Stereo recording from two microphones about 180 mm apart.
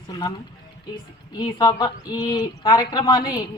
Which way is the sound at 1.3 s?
25° left (ahead or behind).